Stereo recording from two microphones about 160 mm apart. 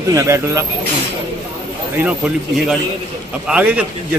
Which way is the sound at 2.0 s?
5° right (ahead or behind).